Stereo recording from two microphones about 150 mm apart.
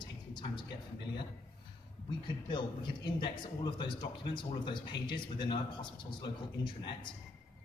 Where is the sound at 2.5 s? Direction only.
30° left (ahead or behind).